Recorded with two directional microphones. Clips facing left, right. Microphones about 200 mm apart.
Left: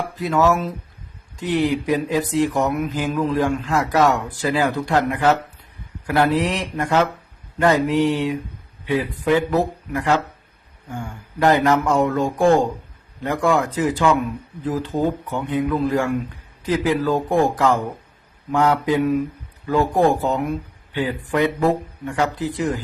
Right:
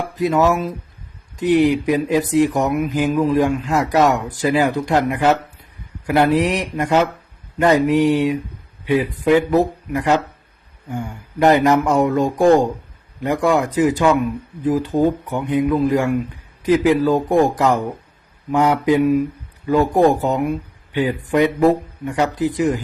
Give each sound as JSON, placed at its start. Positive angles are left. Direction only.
{"t": 0.2, "sound": "speech", "side_deg": -15}